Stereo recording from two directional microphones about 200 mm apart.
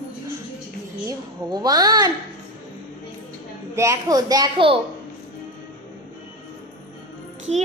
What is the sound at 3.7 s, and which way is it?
A woman's voice, 15° right (ahead or behind).